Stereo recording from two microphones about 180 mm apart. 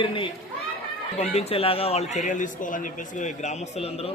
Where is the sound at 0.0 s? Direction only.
30° left (ahead or behind).